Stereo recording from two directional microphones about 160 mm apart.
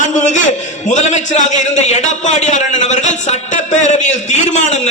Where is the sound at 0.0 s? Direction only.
50° left (ahead or behind).